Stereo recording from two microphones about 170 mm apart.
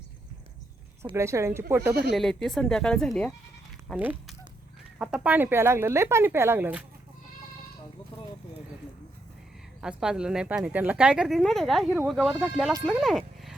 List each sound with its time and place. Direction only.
1.1 s speech: 15° right (ahead or behind)
2.1 s speech: centre (ahead or behind)
3.8 s speech: 10° right (ahead or behind)
9.8 s speech: 5° right (ahead or behind)